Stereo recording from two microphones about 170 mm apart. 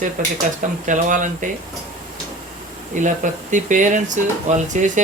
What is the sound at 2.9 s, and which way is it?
Speech, 50° right (ahead or behind).